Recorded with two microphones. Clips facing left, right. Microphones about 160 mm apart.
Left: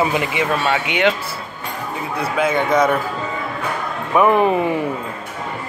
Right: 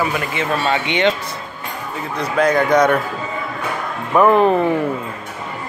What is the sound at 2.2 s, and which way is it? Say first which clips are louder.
Speech: right 3 dB; 5° left (ahead or behind).